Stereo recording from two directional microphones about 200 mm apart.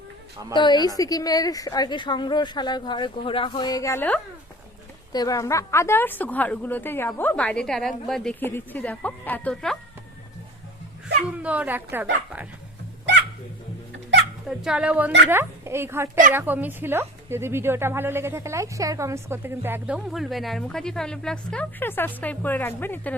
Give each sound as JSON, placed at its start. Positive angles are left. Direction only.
{"t": 0.5, "sound": "a woman's voice", "side_deg": 20}
{"t": 11.3, "sound": "speech", "side_deg": -5}
{"t": 14.4, "sound": "speech", "side_deg": -5}